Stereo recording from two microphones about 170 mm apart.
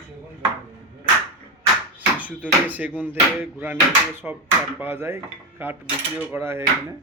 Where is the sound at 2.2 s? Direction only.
10° right (ahead or behind).